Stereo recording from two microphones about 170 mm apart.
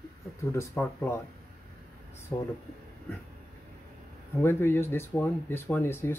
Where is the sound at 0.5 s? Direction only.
15° left (ahead or behind).